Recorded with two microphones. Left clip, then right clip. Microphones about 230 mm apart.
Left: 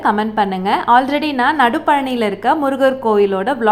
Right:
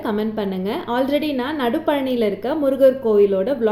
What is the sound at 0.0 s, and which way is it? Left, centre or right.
A woman's voice, centre.